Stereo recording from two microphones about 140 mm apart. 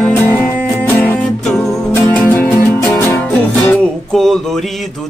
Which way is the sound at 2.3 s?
15° left (ahead or behind).